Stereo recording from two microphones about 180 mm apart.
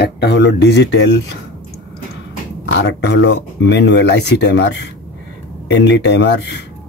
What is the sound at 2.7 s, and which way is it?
Speech, 70° left (ahead or behind).